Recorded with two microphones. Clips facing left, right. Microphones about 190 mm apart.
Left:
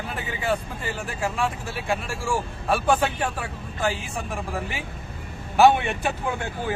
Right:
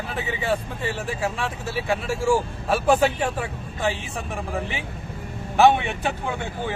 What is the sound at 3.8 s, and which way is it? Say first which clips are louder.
Speech: even; centre (ahead or behind).